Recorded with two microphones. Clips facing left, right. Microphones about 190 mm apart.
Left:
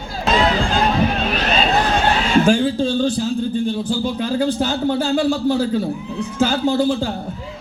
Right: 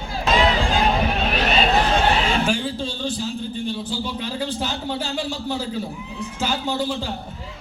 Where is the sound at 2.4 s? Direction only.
50° left (ahead or behind).